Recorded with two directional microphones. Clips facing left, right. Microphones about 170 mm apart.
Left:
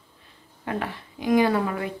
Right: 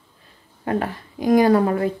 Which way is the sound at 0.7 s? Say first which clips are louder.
Right 6 dB; 40° right (ahead or behind).